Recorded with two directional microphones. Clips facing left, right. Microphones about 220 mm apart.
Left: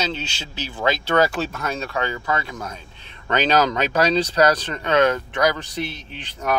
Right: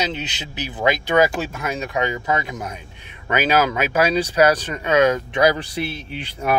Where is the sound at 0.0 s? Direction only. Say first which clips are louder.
Right 1 dB; 20° right (ahead or behind).